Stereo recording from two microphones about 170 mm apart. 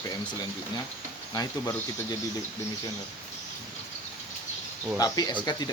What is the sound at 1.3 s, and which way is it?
Speech, 20° left (ahead or behind).